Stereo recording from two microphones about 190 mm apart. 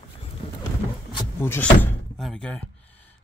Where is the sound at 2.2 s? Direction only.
Centre (ahead or behind).